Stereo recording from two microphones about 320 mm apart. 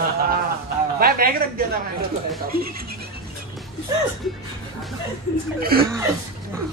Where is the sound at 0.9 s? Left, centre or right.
Right.